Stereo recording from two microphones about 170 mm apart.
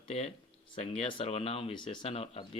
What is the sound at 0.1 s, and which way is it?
Speech, 40° left (ahead or behind).